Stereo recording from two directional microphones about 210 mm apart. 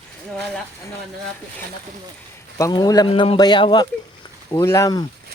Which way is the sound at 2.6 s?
15° left (ahead or behind).